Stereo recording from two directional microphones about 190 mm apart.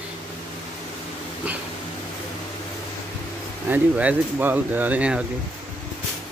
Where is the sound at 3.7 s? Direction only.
10° right (ahead or behind).